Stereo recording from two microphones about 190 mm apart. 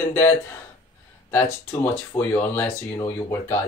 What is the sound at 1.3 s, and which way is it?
Speech, 15° left (ahead or behind).